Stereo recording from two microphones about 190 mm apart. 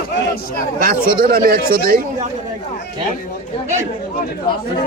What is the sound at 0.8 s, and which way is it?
Speech, 50° right (ahead or behind).